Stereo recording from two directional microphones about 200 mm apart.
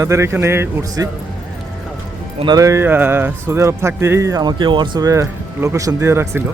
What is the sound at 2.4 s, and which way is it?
Speech, 20° right (ahead or behind).